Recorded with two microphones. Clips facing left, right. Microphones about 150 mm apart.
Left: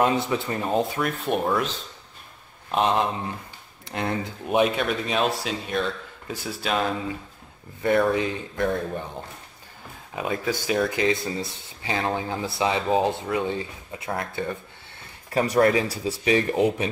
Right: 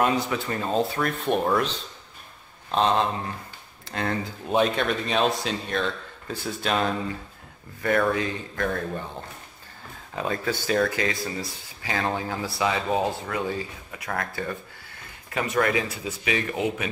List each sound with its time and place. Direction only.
0.0 s speech: 20° left (ahead or behind); by 1.7 s centre (ahead or behind)
2.7 s speech: 15° left (ahead or behind)
7.8 s speech: 20° left (ahead or behind)
10.1 s speech: 10° left (ahead or behind)
15.3 s speech: 35° left (ahead or behind)